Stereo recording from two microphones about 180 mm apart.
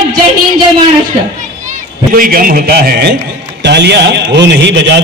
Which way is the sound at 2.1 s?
50° right (ahead or behind).